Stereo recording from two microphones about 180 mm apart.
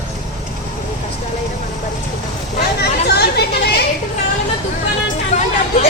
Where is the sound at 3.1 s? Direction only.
65° left (ahead or behind).